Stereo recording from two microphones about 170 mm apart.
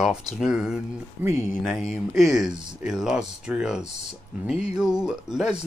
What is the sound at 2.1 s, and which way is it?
Speech, centre (ahead or behind).